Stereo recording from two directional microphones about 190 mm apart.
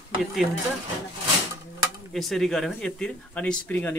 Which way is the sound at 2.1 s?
Centre (ahead or behind).